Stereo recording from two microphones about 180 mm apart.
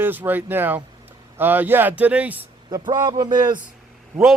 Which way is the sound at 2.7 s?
25° right (ahead or behind).